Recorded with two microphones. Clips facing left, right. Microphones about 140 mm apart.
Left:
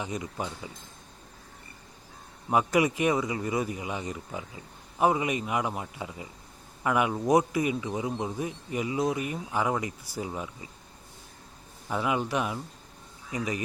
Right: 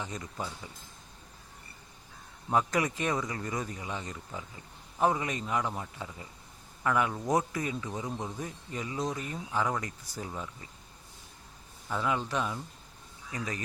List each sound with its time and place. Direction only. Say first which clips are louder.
0.0 s speech: left 4 dB; 15° left (ahead or behind)
2.5 s speech: left 4 dB; 10° left (ahead or behind)
11.9 s speech: left 3 dB; 15° left (ahead or behind)